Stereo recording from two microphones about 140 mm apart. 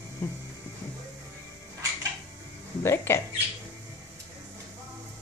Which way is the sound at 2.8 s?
15° left (ahead or behind).